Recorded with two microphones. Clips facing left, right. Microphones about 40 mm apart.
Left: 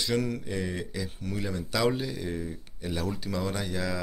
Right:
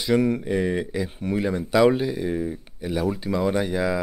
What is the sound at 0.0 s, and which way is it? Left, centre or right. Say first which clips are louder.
Speech: right 8 dB; right.